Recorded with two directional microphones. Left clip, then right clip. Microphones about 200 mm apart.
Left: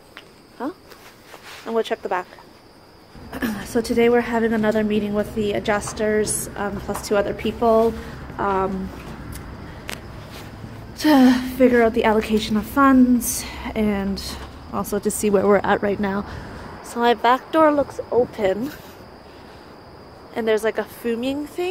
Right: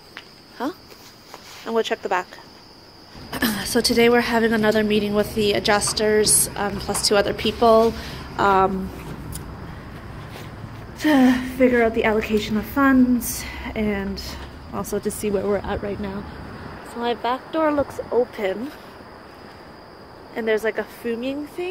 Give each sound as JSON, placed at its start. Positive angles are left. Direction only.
{"t": 0.6, "sound": "a woman's voice", "side_deg": 0}
{"t": 3.3, "sound": "a woman's voice", "side_deg": 0}
{"t": 11.0, "sound": "a woman's voice", "side_deg": 15}
{"t": 17.9, "sound": "a woman's voice", "side_deg": 0}
{"t": 20.3, "sound": "a woman's voice", "side_deg": 15}